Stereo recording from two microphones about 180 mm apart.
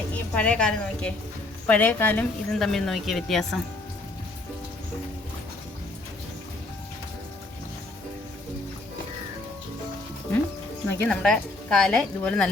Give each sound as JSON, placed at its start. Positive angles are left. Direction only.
{"t": 0.1, "sound": "a woman's voice", "side_deg": 5}
{"t": 10.8, "sound": "speech", "side_deg": 5}